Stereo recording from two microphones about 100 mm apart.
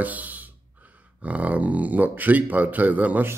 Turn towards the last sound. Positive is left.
turn(degrees=-15)  # may be behind; listen again after turning